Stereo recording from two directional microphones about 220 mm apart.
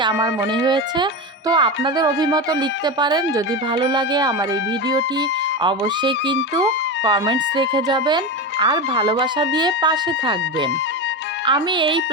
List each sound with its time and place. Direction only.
0.0 s speech: 20° right (ahead or behind)